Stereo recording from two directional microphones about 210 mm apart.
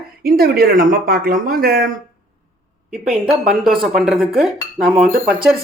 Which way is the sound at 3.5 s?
Centre (ahead or behind).